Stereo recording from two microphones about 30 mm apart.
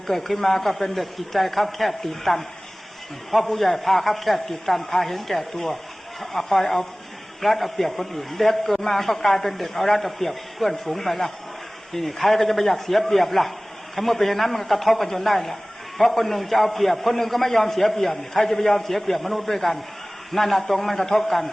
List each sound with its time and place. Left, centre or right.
0.1 s a man's voice: centre